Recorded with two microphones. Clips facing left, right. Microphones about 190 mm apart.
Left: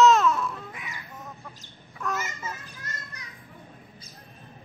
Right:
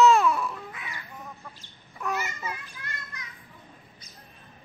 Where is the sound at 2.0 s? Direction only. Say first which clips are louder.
Right 1 dB; 10° right (ahead or behind).